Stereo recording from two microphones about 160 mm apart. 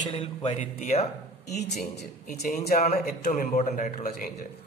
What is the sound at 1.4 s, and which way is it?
Speech, 90° left.